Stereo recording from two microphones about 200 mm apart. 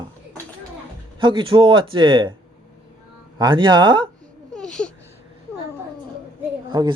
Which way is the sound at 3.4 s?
25° right (ahead or behind).